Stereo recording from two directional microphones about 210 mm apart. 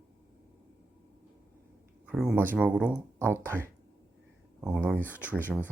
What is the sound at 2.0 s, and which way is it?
Speech, 5° right (ahead or behind).